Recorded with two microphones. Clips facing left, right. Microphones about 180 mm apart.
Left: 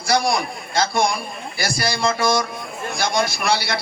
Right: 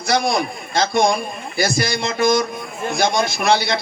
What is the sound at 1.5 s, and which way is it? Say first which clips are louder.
A man's voice: right 4 dB; 20° right (ahead or behind).